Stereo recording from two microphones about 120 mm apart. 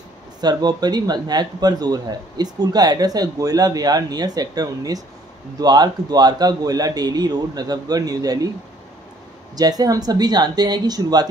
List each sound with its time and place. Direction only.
0.4 s speech: 35° right (ahead or behind)
9.6 s speech: 30° right (ahead or behind)